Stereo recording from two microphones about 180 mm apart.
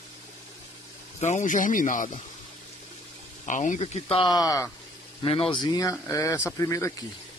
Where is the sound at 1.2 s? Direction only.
40° left (ahead or behind).